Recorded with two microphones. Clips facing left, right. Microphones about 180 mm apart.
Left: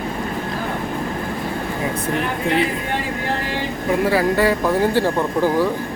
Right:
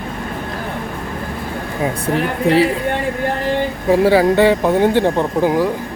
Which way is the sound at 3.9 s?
30° right (ahead or behind).